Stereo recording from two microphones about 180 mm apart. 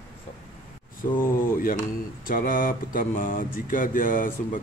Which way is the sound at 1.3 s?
50° left (ahead or behind).